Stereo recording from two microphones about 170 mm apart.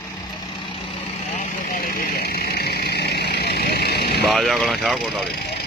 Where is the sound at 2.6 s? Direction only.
70° left (ahead or behind).